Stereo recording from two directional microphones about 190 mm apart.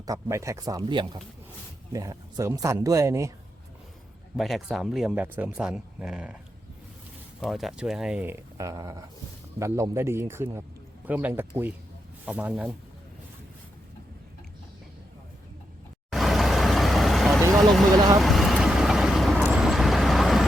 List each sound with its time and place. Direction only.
0.0 s speech: 15° right (ahead or behind)
4.4 s speech: centre (ahead or behind)
7.4 s speech: centre (ahead or behind)
16.1 s vehicle: centre (ahead or behind)